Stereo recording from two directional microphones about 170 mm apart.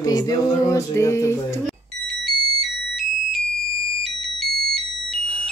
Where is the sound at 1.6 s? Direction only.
Centre (ahead or behind).